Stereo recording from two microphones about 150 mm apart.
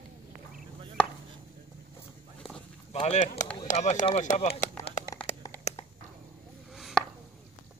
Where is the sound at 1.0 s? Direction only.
10° left (ahead or behind).